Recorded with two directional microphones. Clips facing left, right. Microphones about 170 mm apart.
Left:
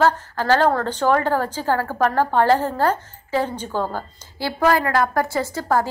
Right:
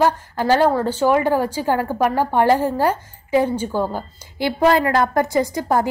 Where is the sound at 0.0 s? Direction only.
15° right (ahead or behind).